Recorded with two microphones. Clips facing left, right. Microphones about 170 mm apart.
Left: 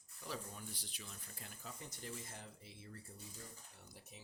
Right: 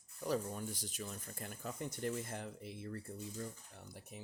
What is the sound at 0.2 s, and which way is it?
Speech, 45° right (ahead or behind).